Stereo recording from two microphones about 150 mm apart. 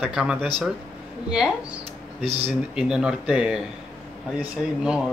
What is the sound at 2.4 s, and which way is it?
Speech, 5° right (ahead or behind).